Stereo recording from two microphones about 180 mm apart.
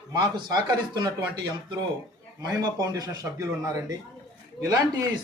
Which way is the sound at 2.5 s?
20° right (ahead or behind).